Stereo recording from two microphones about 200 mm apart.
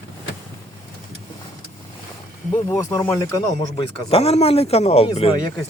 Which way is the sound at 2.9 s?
15° left (ahead or behind).